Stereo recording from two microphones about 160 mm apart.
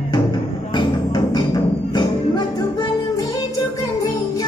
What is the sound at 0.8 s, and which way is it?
Music, 25° left (ahead or behind).